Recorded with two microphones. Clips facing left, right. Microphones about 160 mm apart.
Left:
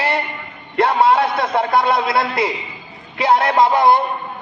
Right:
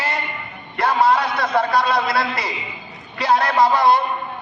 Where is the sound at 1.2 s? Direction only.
25° left (ahead or behind).